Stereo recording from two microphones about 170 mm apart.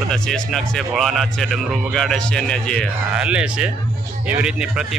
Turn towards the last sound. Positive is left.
turn(degrees=-5)  # may be behind; listen again after turning